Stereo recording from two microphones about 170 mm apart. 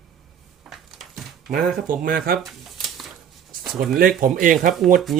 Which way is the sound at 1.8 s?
55° right (ahead or behind).